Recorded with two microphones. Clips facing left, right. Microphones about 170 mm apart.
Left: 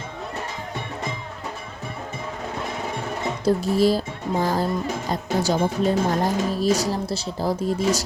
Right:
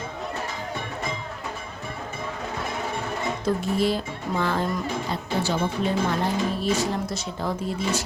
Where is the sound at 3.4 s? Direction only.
35° left (ahead or behind).